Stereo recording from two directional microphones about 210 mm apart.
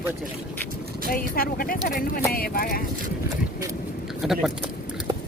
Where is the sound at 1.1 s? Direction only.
45° left (ahead or behind).